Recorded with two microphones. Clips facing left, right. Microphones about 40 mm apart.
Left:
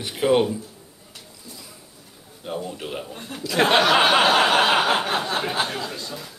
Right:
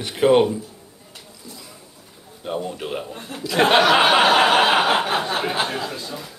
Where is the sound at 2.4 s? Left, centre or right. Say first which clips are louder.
Right 3 dB; right.